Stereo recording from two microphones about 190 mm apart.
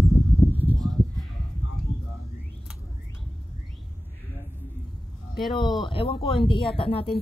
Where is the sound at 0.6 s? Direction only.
10° left (ahead or behind).